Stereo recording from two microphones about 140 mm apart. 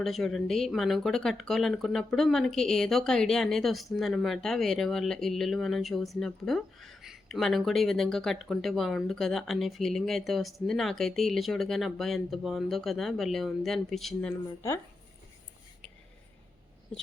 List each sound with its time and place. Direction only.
0.0 s speech: centre (ahead or behind)